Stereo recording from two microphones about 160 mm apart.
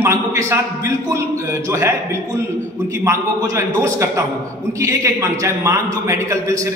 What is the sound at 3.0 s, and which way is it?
A man's voice, 20° right (ahead or behind).